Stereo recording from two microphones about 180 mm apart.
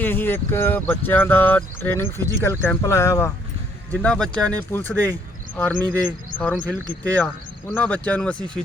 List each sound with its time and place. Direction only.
0.0 s speech: 10° left (ahead or behind)